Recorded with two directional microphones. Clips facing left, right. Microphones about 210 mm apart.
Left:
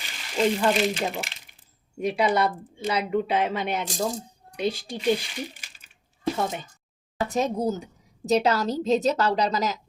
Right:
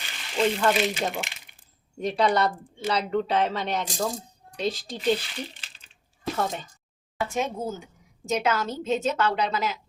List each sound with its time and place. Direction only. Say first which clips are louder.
0.3 s speech: left 1 dB; centre (ahead or behind)
5.0 s a sound: left 1 dB; 10° left (ahead or behind)
7.2 s a woman's voice: left 3 dB; 35° left (ahead or behind)